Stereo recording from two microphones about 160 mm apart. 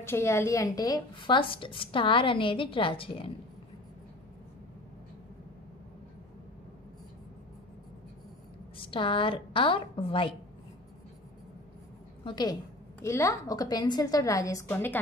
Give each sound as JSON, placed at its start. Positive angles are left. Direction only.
{"t": 0.0, "sound": "speech", "side_deg": 15}
{"t": 8.7, "sound": "speech", "side_deg": 35}
{"t": 12.3, "sound": "a woman's voice", "side_deg": 25}